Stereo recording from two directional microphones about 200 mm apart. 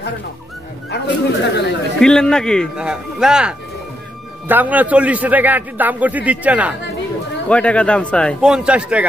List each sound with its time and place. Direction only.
0.8 s speech: 60° left (ahead or behind)
2.0 s a man's voice: 5° left (ahead or behind)
7.4 s speech: 5° left (ahead or behind)